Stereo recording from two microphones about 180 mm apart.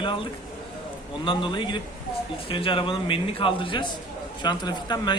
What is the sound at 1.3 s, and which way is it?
Speech, 30° left (ahead or behind).